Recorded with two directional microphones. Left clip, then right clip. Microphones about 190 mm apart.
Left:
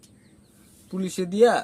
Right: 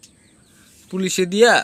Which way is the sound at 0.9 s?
20° right (ahead or behind).